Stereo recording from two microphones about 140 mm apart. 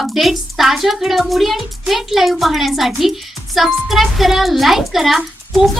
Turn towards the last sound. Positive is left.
turn(degrees=0)  # may be behind; listen again after turning